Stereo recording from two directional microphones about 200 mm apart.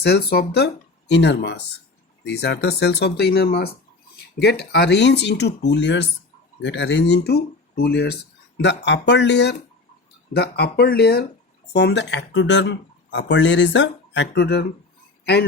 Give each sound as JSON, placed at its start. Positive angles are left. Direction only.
{"t": 0.0, "sound": "speech", "side_deg": 55}